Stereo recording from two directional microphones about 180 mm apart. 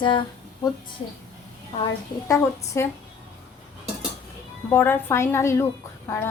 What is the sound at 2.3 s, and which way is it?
Speech, 15° left (ahead or behind).